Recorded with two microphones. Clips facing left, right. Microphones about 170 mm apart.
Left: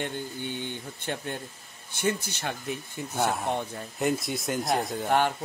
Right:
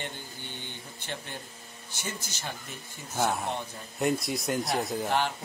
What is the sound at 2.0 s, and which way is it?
Speech, 60° left (ahead or behind).